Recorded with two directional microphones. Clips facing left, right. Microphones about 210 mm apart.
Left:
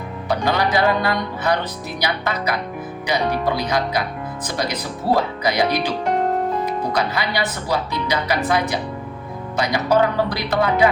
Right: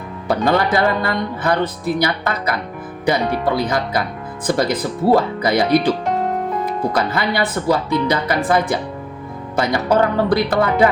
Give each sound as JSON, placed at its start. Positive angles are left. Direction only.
{"t": 0.3, "sound": "speech", "side_deg": -55}
{"t": 6.9, "sound": "speech", "side_deg": -55}